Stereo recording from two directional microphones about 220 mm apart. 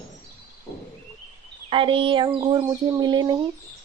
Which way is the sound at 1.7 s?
25° right (ahead or behind).